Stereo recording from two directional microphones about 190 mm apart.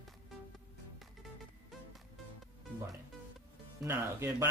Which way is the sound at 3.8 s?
15° right (ahead or behind).